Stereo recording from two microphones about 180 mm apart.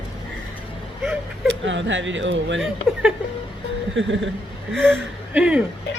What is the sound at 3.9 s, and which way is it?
Speech, 90° right.